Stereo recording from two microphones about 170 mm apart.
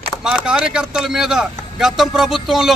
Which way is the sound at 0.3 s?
5° right (ahead or behind).